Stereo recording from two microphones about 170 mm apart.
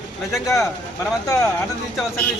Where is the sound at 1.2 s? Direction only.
20° left (ahead or behind).